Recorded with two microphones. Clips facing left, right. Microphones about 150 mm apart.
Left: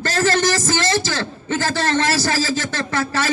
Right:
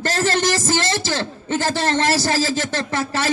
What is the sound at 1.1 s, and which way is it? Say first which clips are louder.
A man's voice: right 1 dB; 20° right (ahead or behind).